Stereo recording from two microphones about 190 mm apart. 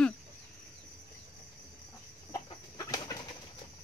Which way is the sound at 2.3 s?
20° left (ahead or behind).